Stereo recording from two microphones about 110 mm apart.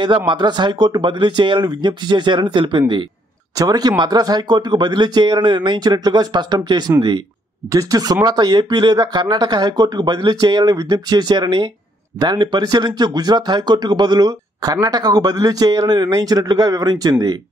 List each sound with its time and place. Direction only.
0.0 s speech: 45° right (ahead or behind)
3.5 s speech: 35° right (ahead or behind)